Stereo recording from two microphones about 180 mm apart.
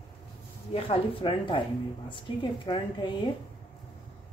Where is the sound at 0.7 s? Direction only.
30° left (ahead or behind).